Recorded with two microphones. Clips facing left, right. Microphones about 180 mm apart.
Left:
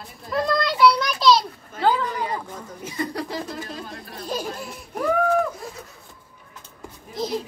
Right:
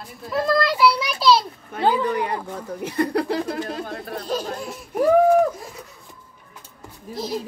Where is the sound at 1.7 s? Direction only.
65° right (ahead or behind).